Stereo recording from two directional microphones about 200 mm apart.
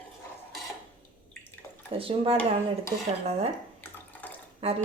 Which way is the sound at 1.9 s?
25° right (ahead or behind).